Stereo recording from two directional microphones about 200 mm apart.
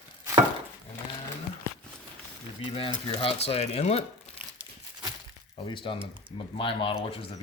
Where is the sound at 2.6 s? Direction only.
25° left (ahead or behind).